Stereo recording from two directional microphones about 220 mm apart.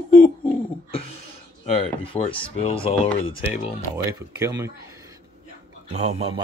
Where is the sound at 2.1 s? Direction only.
25° left (ahead or behind).